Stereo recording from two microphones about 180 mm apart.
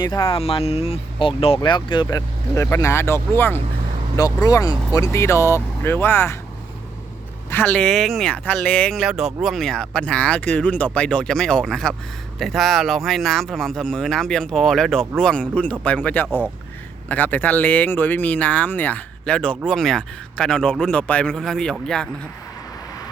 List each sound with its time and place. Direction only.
0.0 s speech: 25° left (ahead or behind)
7.5 s speech: 10° left (ahead or behind)